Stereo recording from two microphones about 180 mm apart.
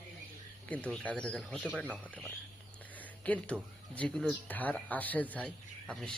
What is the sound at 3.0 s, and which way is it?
A man's voice, 10° left (ahead or behind).